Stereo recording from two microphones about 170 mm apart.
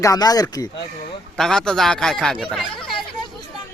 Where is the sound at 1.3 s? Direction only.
5° left (ahead or behind).